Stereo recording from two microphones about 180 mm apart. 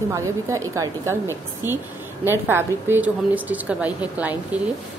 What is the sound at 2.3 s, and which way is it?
A woman's voice, 10° right (ahead or behind).